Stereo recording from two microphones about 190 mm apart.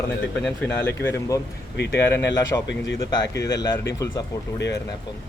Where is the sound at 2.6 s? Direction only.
70° left (ahead or behind).